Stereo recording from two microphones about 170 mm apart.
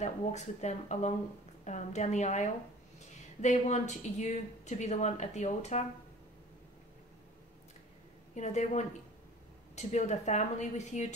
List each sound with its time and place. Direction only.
0.0 s speech: 45° left (ahead or behind)
8.4 s speech: 45° left (ahead or behind)